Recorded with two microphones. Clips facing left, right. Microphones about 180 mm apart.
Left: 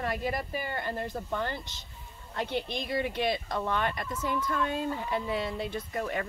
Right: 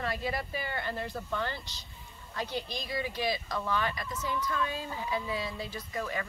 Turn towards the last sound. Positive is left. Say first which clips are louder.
# left 3 dB
turn(degrees=50)  # may be behind; listen again after turning